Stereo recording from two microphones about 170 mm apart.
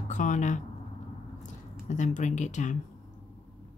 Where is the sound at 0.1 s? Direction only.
45° left (ahead or behind).